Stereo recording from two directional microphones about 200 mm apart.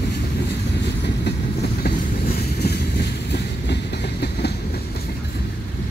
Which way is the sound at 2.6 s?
55° left (ahead or behind).